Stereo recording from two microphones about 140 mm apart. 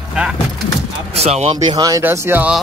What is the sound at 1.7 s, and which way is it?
Speech, 25° right (ahead or behind).